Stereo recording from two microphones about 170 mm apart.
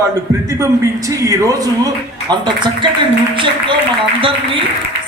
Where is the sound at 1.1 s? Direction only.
20° right (ahead or behind).